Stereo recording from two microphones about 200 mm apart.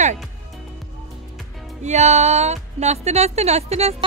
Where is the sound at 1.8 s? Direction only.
35° right (ahead or behind).